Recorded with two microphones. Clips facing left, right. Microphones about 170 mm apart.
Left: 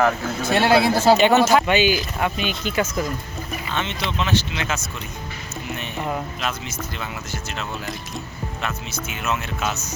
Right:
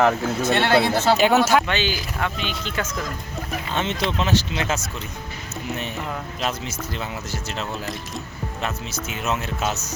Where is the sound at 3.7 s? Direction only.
40° right (ahead or behind).